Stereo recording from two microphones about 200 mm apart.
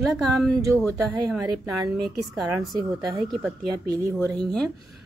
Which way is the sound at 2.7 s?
20° right (ahead or behind).